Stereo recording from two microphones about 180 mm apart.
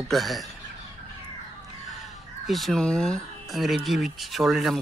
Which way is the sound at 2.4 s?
Centre (ahead or behind).